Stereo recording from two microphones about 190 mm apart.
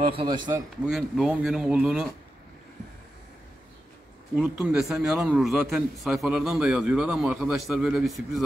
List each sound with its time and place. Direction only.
0.0 s a man's voice: 25° right (ahead or behind)
0.8 s a man's voice: centre (ahead or behind)
4.4 s a man's voice: 5° right (ahead or behind)